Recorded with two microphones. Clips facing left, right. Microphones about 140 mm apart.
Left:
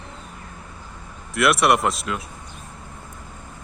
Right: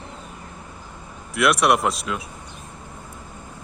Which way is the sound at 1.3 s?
Centre (ahead or behind).